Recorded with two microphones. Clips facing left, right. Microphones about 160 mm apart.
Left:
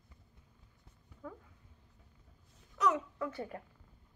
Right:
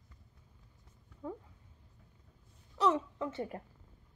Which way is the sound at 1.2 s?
25° right (ahead or behind).